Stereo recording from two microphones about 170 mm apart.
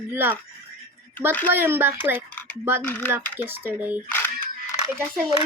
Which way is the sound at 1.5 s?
10° right (ahead or behind).